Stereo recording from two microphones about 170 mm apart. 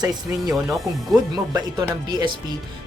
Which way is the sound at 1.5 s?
25° right (ahead or behind).